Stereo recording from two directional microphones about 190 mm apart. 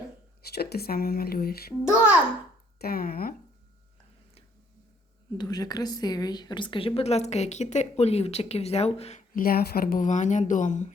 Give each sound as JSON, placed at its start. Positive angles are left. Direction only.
{"t": 0.5, "sound": "speech", "side_deg": 55}
{"t": 1.8, "sound": "a child's voice", "side_deg": -5}
{"t": 2.7, "sound": "speech", "side_deg": 55}
{"t": 5.4, "sound": "a woman's voice", "side_deg": 20}